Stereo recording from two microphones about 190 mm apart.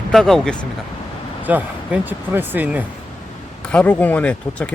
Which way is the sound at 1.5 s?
10° right (ahead or behind).